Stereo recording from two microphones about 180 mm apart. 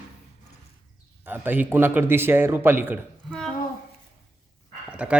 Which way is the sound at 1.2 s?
10° right (ahead or behind).